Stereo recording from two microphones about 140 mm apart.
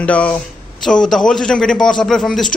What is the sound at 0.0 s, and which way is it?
A woman's voice, 10° left (ahead or behind).